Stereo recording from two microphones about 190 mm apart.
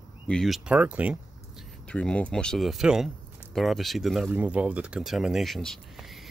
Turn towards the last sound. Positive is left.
turn(degrees=0)  # may be behind; listen again after turning